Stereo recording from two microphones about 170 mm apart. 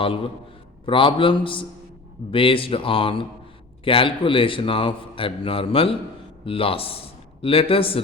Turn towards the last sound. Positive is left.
turn(degrees=35)  # may be behind; listen again after turning